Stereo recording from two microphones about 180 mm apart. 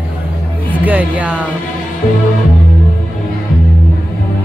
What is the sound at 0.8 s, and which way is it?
Speech, 10° right (ahead or behind).